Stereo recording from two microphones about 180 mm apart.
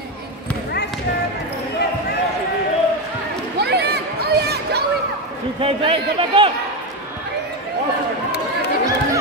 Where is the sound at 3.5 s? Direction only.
65° right (ahead or behind).